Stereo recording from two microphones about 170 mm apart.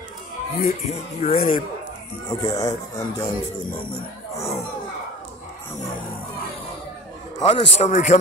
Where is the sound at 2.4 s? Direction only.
20° left (ahead or behind).